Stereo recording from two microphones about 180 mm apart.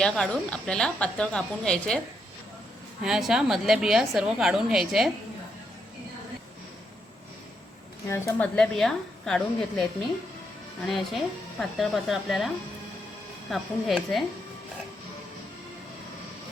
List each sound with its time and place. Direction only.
0.0 s a woman's voice: 5° left (ahead or behind)
3.0 s a woman's voice: centre (ahead or behind)
8.0 s speech: 15° left (ahead or behind)
8.5 s a woman's voice: centre (ahead or behind)
10.8 s a woman's voice: centre (ahead or behind)
13.5 s a woman's voice: centre (ahead or behind)